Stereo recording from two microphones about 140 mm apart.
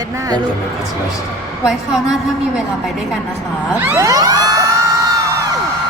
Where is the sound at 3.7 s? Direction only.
15° right (ahead or behind).